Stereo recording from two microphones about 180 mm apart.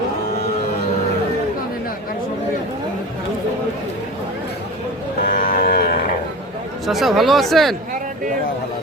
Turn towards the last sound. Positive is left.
turn(degrees=0)  # may be behind; listen again after turning